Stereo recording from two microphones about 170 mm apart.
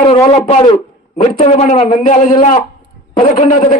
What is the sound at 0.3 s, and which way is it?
A man's voice, 40° left (ahead or behind).